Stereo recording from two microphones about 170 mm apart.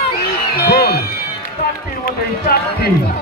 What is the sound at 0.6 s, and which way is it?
Music, 65° left (ahead or behind).